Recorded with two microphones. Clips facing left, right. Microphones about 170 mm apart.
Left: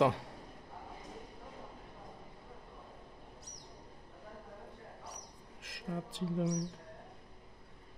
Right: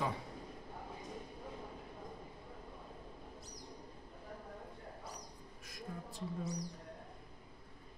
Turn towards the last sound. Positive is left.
turn(degrees=75)  # may be behind; listen again after turning